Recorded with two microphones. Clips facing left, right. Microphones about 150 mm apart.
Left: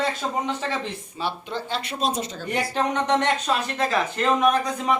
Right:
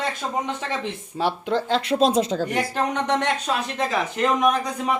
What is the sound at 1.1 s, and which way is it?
Speech, 90° right.